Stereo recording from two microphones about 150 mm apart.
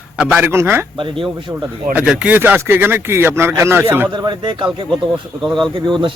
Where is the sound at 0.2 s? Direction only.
Centre (ahead or behind).